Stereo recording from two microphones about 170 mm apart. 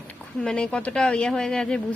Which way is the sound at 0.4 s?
5° left (ahead or behind).